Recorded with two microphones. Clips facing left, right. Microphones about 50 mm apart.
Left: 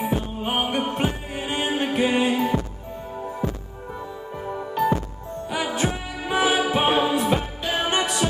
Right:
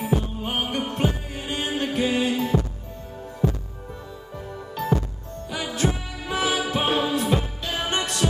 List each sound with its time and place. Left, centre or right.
0.0 s music: centre
4.5 s music: centre